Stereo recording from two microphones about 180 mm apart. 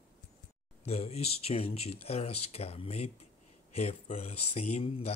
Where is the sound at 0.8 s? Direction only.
35° left (ahead or behind).